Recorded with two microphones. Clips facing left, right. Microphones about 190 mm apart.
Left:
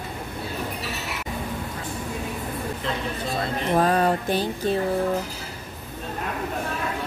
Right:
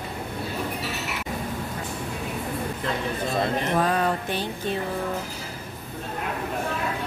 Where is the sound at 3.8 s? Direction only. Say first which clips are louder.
Left 3 dB; 40° left (ahead or behind).